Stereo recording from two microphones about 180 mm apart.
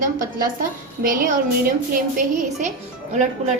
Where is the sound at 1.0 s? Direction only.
50° right (ahead or behind).